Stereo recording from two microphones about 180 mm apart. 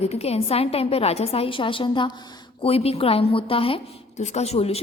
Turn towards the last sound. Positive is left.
turn(degrees=35)  # may be behind; listen again after turning